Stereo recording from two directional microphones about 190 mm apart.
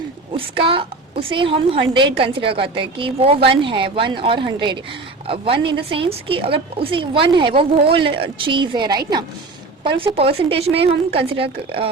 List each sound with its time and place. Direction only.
0.3 s a woman's voice: 30° right (ahead or behind)